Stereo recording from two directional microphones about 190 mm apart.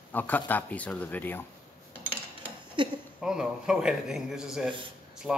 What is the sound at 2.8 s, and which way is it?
Speech, 25° right (ahead or behind).